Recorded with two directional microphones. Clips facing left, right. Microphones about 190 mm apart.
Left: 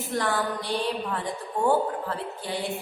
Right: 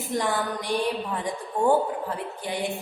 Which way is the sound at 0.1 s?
15° right (ahead or behind).